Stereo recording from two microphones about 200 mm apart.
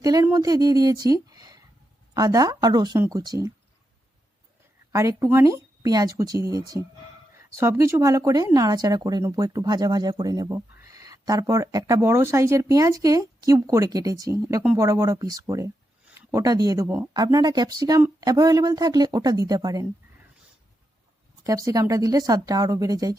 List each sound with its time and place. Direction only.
0.0 s speech: 20° right (ahead or behind)
4.9 s speech: 15° right (ahead or behind)
21.4 s speech: 15° right (ahead or behind)